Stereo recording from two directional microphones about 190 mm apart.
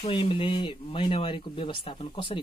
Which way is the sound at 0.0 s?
30° left (ahead or behind).